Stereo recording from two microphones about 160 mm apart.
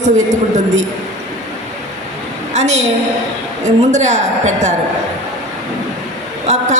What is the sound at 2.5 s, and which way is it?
A man's voice, 45° right (ahead or behind).